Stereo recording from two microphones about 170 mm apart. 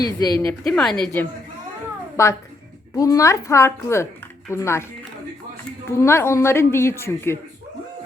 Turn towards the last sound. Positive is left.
turn(degrees=15)  # may be behind; listen again after turning